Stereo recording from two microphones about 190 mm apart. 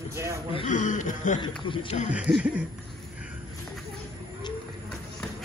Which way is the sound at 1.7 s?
25° left (ahead or behind).